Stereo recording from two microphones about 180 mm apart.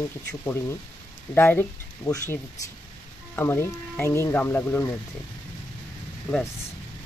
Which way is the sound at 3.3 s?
10° left (ahead or behind).